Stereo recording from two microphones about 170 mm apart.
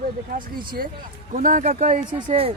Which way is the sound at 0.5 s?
60° right (ahead or behind).